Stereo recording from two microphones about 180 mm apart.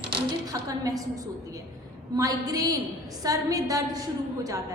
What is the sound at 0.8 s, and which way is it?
A woman's voice, 20° right (ahead or behind).